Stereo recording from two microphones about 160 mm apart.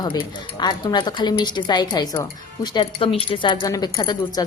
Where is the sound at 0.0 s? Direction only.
25° left (ahead or behind).